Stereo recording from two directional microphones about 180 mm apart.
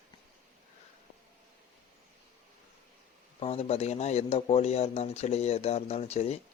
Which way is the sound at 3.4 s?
35° left (ahead or behind).